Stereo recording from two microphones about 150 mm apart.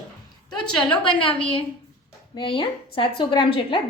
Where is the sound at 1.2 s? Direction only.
35° left (ahead or behind).